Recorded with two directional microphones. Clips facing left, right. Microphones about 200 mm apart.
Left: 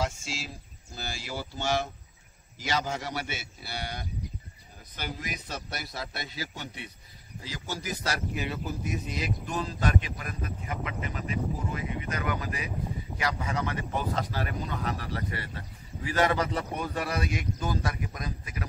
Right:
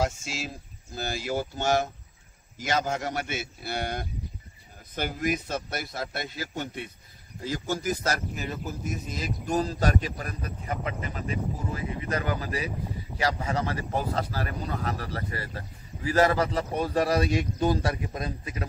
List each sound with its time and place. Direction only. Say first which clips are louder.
0.0 s a man's voice: right 4 dB; 45° right (ahead or behind); by 18.7 s 25° right (ahead or behind)